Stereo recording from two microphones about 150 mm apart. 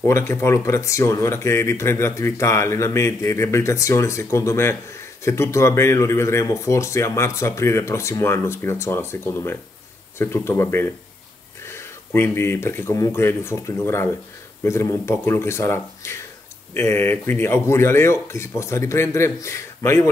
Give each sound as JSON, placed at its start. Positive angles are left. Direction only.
{"t": 0.0, "sound": "speech", "side_deg": 15}